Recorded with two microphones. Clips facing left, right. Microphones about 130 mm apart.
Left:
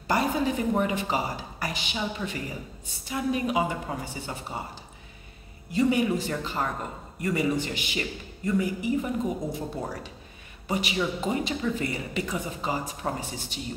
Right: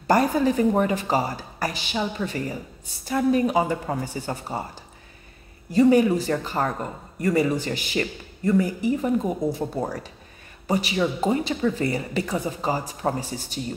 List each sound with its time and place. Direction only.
0.0 s speech: 45° right (ahead or behind)
5.7 s speech: 40° right (ahead or behind)